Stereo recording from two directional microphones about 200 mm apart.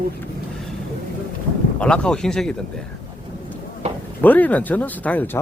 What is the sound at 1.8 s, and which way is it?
Speech, 5° left (ahead or behind).